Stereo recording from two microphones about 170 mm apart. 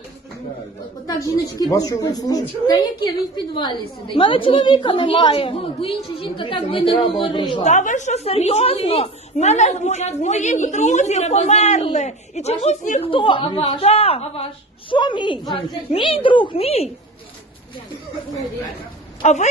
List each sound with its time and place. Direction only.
1.0 s a woman's voice: 20° left (ahead or behind)
7.6 s a woman's voice: 45° left (ahead or behind)
13.0 s a woman's voice: 30° left (ahead or behind)
19.2 s speech: 40° left (ahead or behind)